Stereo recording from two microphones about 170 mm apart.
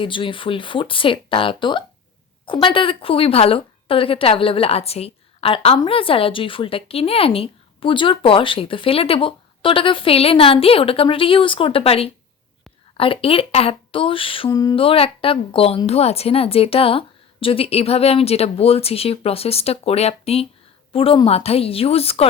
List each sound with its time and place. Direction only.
0.0 s a woman's voice: 30° left (ahead or behind)
14.8 s a woman's voice: 35° left (ahead or behind)